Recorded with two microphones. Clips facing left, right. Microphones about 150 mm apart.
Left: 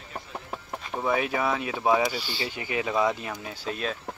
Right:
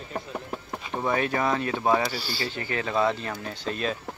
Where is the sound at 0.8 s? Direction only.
Centre (ahead or behind).